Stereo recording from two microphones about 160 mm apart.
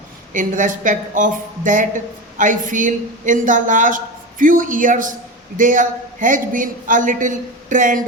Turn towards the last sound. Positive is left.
turn(degrees=-55)  # may be behind; listen again after turning